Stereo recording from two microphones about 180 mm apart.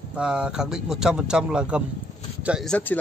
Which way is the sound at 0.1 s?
5° right (ahead or behind).